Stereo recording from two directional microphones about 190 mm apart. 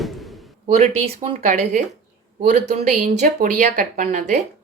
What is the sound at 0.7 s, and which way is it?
Speech, 35° right (ahead or behind).